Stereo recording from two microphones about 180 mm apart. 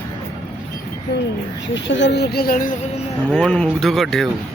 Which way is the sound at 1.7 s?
90° left.